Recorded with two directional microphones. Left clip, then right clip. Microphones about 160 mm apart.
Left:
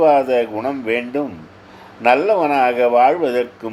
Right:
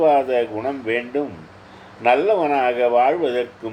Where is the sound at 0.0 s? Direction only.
35° left (ahead or behind).